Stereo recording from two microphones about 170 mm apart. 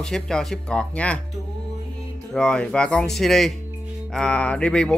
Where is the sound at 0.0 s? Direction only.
5° left (ahead or behind).